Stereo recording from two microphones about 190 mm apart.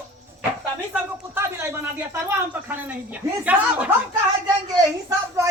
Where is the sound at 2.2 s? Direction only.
10° right (ahead or behind).